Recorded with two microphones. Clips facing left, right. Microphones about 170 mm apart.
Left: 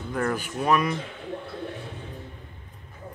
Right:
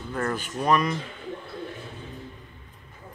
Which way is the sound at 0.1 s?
10° left (ahead or behind).